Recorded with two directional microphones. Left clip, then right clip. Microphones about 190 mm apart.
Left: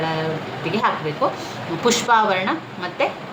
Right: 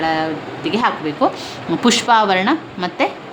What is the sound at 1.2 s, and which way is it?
A woman's voice, 45° right (ahead or behind).